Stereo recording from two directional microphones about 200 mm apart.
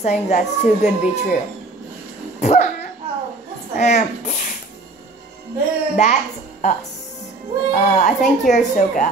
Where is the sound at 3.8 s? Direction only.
35° left (ahead or behind).